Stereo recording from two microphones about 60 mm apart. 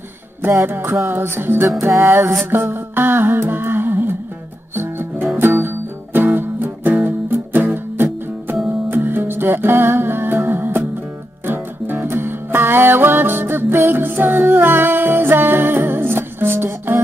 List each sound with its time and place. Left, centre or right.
0.4 s music: right
0.7 s music: right
2.5 s humming: right
4.7 s music: right